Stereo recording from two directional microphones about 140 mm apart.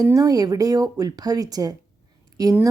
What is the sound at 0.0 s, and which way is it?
A woman's voice, 25° right (ahead or behind).